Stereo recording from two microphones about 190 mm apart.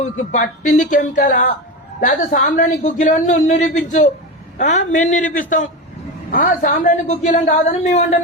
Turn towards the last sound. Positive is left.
turn(degrees=35)  # may be behind; listen again after turning